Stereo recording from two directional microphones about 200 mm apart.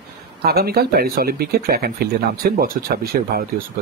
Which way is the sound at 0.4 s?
50° right (ahead or behind).